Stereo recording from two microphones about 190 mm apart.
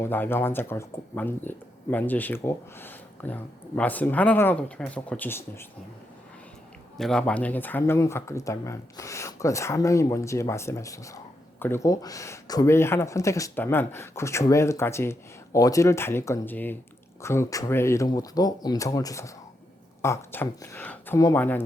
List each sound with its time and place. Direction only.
0.0 s speech: 10° left (ahead or behind)
6.9 s speech: 5° left (ahead or behind)